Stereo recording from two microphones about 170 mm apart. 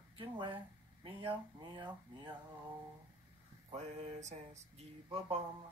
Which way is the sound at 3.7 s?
40° right (ahead or behind).